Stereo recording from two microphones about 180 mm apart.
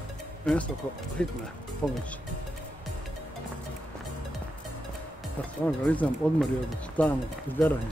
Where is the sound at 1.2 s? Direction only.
5° left (ahead or behind).